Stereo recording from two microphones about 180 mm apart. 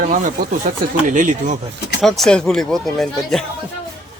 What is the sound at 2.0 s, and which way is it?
Speech, centre (ahead or behind).